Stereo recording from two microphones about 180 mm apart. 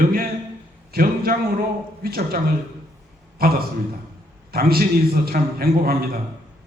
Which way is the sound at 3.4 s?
55° right (ahead or behind).